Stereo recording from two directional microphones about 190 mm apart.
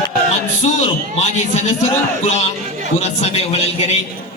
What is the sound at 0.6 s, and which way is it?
A man's voice, 35° left (ahead or behind).